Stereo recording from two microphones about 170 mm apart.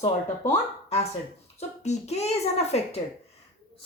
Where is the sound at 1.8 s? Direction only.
40° left (ahead or behind).